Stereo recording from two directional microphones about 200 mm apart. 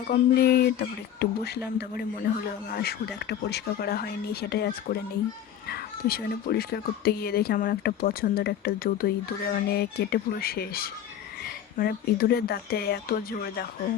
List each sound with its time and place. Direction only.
0.1 s speech: 50° left (ahead or behind)